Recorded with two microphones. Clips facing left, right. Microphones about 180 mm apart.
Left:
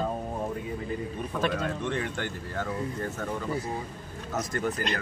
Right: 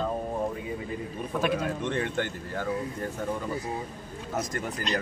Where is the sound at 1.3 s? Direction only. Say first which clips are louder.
Right 2 dB; 10° right (ahead or behind).